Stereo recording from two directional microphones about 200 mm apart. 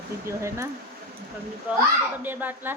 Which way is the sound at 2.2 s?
10° right (ahead or behind).